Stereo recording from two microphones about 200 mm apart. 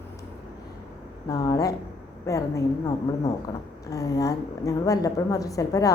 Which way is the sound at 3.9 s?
15° left (ahead or behind).